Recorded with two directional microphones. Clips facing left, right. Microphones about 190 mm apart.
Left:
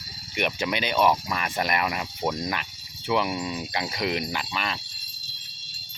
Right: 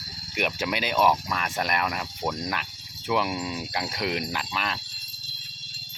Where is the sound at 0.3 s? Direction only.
5° right (ahead or behind).